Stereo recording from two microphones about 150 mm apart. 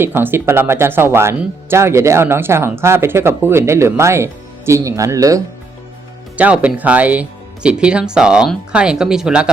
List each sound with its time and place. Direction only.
0.0 s speech: 15° right (ahead or behind)
6.3 s speech: 10° right (ahead or behind)